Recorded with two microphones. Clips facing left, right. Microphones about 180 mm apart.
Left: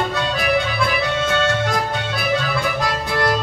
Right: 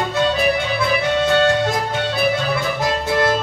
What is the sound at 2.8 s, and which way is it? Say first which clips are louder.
Music: right 3 dB; 20° right (ahead or behind).